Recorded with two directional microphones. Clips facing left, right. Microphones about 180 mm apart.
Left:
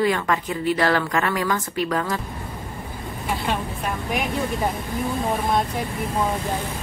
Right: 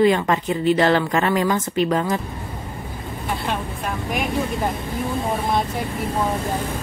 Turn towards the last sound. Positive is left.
turn(degrees=0)  # may be behind; listen again after turning